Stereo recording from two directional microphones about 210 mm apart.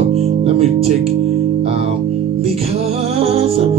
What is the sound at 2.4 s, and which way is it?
Music, 30° right (ahead or behind).